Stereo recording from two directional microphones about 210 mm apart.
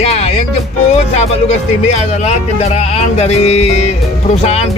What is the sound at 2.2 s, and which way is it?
Music, 30° left (ahead or behind).